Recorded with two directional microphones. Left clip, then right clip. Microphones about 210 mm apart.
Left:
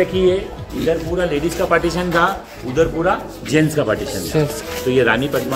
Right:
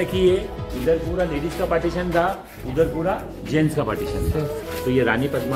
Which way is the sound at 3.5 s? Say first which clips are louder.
Left 5 dB; 35° left (ahead or behind).